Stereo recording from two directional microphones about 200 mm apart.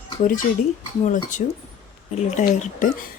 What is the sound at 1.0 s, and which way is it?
Speech, 40° left (ahead or behind).